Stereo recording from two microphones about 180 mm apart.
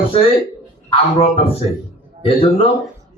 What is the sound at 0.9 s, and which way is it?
A man's voice, 30° left (ahead or behind).